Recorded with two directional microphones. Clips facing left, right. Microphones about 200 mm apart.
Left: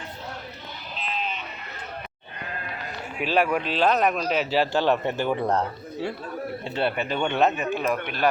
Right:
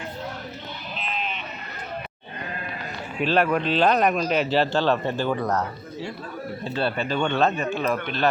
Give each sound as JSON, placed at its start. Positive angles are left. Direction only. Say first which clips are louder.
{"t": 3.2, "sound": "speech", "louder": "right 2 dB", "side_deg": 10}
{"t": 6.7, "sound": "speech", "louder": "right 1 dB", "side_deg": 20}